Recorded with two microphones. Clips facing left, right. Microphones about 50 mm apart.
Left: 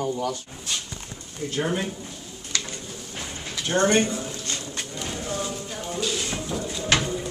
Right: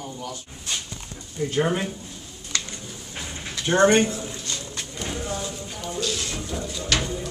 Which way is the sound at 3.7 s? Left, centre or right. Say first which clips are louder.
Right 3 dB; right.